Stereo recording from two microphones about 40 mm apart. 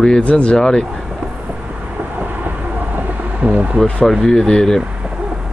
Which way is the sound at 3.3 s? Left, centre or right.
Right.